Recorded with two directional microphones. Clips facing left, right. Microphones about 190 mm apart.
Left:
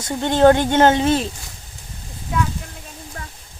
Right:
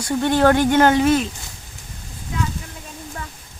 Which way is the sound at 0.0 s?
20° left (ahead or behind).